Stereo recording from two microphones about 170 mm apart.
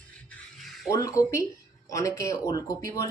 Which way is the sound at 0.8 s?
20° left (ahead or behind).